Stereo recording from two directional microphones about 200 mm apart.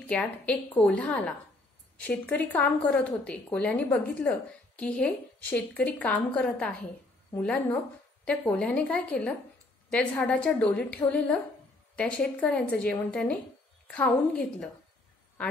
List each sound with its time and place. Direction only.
0.0 s a woman's voice: 5° left (ahead or behind)